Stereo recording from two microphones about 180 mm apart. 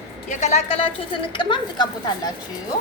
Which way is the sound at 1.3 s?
25° left (ahead or behind).